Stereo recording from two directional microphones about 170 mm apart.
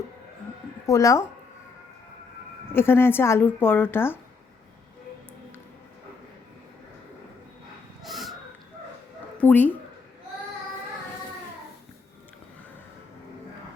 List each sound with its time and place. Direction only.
0.9 s speech: 20° left (ahead or behind)
2.7 s speech: 15° left (ahead or behind)
8.0 s a sound: centre (ahead or behind)
9.4 s speech: 10° left (ahead or behind)